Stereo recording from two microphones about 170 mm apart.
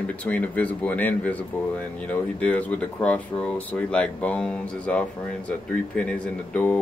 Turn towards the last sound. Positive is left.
turn(degrees=5)  # may be behind; listen again after turning